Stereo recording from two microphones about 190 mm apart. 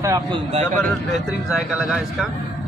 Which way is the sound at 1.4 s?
5° right (ahead or behind).